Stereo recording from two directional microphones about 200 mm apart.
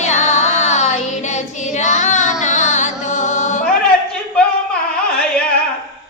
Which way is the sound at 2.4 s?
35° left (ahead or behind).